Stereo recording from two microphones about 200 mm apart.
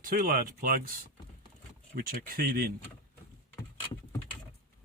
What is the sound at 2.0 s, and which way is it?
Speech, 45° right (ahead or behind).